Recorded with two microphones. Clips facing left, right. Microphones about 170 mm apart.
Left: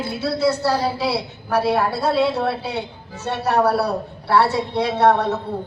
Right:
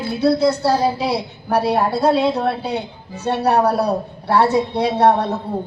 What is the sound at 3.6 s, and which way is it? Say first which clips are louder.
Speech: right 1 dB; 15° right (ahead or behind).